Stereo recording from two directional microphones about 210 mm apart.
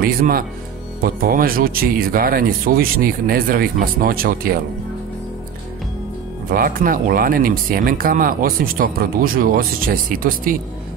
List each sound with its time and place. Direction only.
0.0 s speech: 45° right (ahead or behind)
6.5 s speech: 40° right (ahead or behind)